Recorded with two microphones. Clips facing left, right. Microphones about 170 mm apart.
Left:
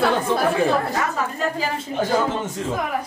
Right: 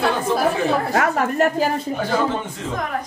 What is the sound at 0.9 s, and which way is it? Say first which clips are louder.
Speech: right 5 dB; 75° right (ahead or behind).